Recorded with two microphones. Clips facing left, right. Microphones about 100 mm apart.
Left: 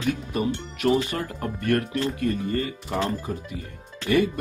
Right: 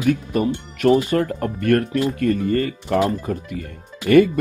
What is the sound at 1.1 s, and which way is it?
Speech, 50° right (ahead or behind).